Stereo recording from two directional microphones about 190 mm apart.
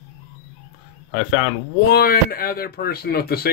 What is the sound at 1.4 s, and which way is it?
Speech, 55° left (ahead or behind).